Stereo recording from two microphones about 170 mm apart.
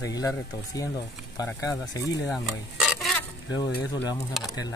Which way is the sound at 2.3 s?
Centre (ahead or behind).